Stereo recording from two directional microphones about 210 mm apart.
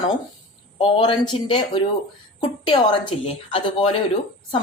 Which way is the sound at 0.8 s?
20° left (ahead or behind).